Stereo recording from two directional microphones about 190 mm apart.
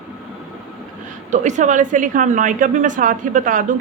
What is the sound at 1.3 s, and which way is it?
Speech, 40° right (ahead or behind).